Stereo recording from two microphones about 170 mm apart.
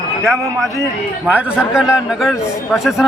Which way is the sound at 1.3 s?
10° right (ahead or behind).